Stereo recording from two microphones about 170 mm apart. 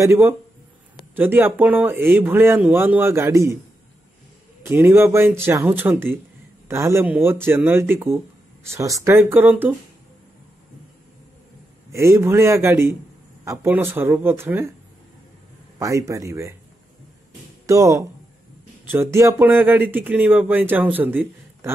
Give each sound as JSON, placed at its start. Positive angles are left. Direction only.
{"t": 0.0, "sound": "speech", "side_deg": -15}
{"t": 4.6, "sound": "speech", "side_deg": -15}
{"t": 11.9, "sound": "speech", "side_deg": -15}
{"t": 15.8, "sound": "speech", "side_deg": -20}
{"t": 17.6, "sound": "speech", "side_deg": -20}